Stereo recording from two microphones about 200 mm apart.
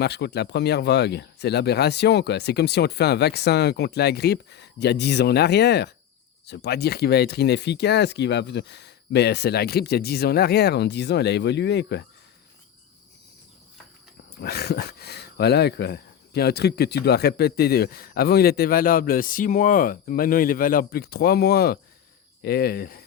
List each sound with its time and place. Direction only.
0.0 s speech: 55° left (ahead or behind)
14.4 s speech: 50° left (ahead or behind)